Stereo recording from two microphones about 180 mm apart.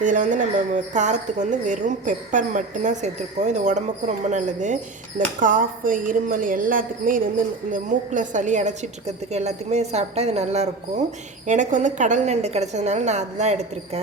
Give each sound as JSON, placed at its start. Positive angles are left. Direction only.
{"t": 0.0, "sound": "a woman's voice", "side_deg": -45}